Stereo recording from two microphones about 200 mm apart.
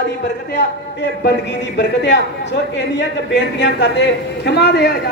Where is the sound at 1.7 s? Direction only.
60° left (ahead or behind).